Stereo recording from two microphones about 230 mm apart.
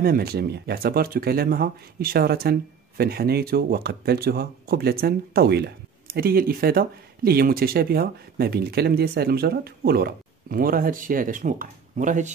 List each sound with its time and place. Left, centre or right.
0.0 s speech: right